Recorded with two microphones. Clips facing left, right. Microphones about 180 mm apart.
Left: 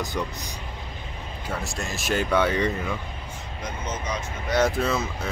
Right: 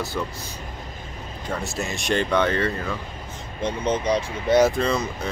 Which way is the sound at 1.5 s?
Centre (ahead or behind).